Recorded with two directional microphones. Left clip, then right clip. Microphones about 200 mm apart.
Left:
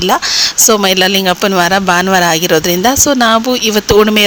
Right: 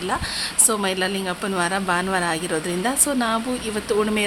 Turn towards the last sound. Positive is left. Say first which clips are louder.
# left 13 dB
turn(degrees=40)  # may be behind; listen again after turning